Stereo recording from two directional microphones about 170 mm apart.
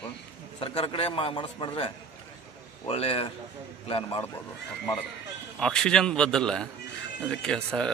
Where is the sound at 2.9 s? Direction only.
35° left (ahead or behind).